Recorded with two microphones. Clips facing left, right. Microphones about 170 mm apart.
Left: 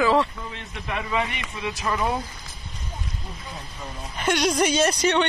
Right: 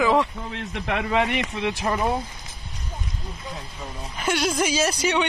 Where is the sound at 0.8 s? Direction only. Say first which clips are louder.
Right 4 dB; 70° right (ahead or behind).